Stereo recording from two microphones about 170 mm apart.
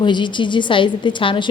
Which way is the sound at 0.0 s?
25° left (ahead or behind).